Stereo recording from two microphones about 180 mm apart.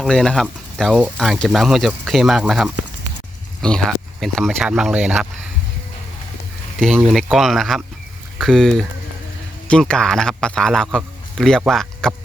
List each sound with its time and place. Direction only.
0.0 s speech: 5° left (ahead or behind)
6.7 s speech: centre (ahead or behind)